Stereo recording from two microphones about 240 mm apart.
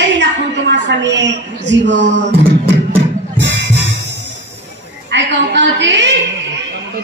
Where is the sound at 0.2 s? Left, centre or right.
Right.